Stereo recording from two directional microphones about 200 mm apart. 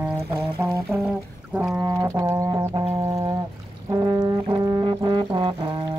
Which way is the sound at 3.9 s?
15° right (ahead or behind).